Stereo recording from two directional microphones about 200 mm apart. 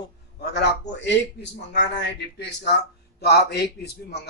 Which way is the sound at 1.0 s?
60° left (ahead or behind).